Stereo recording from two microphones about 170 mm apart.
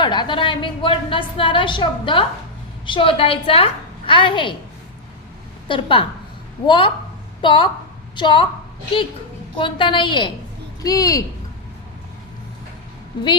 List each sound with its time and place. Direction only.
0.0 s a woman's voice: 25° left (ahead or behind)
5.6 s a woman's voice: 30° left (ahead or behind)
9.6 s a woman's voice: 30° left (ahead or behind)